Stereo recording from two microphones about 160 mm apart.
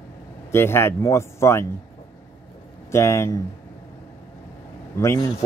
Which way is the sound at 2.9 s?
15° left (ahead or behind).